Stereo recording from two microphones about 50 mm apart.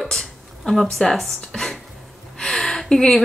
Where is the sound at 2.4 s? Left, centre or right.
Centre.